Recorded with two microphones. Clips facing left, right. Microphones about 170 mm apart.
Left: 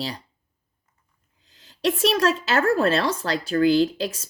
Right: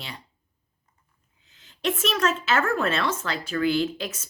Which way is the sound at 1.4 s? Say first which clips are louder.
Left 4 dB; 35° left (ahead or behind).